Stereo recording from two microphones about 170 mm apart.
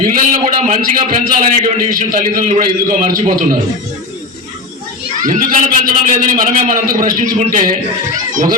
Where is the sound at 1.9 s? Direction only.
55° right (ahead or behind).